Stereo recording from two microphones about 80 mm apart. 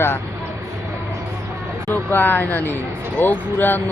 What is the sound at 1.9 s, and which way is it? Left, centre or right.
Speech, left.